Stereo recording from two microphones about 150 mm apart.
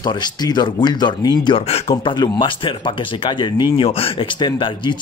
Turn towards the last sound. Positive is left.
turn(degrees=30)  # may be behind; listen again after turning